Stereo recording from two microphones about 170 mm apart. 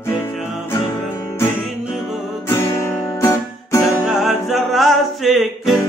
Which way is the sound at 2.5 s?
15° left (ahead or behind).